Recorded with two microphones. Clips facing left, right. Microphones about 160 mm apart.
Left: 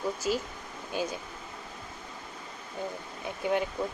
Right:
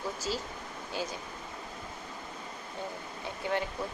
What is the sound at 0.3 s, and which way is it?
Speech, 25° right (ahead or behind).